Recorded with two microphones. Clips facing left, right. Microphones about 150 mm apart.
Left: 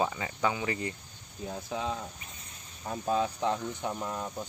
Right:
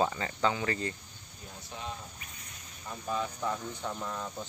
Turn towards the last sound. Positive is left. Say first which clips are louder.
# left 3 dB
turn(degrees=20)  # may be behind; listen again after turning